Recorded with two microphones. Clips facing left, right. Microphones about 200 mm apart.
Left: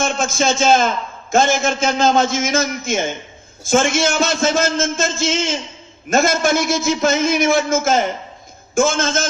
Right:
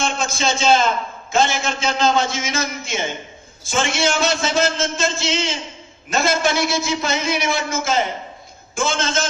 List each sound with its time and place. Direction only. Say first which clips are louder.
0.0 s a man's voice: left 4 dB; 50° left (ahead or behind)